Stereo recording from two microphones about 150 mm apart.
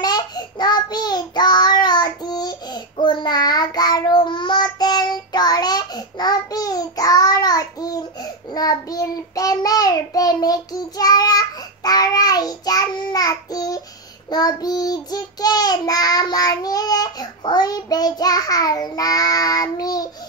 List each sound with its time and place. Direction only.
0.0 s child singing: 25° left (ahead or behind)